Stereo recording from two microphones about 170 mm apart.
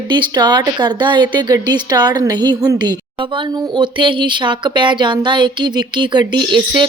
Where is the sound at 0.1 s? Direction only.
25° right (ahead or behind).